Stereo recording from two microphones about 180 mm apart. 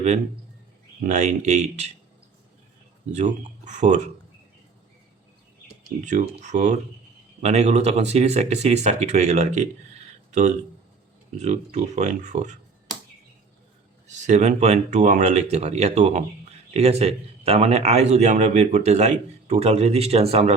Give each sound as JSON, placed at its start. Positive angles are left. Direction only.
{"t": 1.0, "sound": "speech", "side_deg": -45}
{"t": 3.1, "sound": "speech", "side_deg": -40}
{"t": 6.1, "sound": "speech", "side_deg": -40}
{"t": 11.3, "sound": "speech", "side_deg": -35}
{"t": 14.3, "sound": "speech", "side_deg": -40}